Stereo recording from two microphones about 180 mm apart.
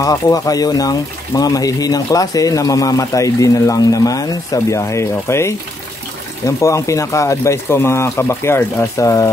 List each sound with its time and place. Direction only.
0.0 s speech: 20° left (ahead or behind)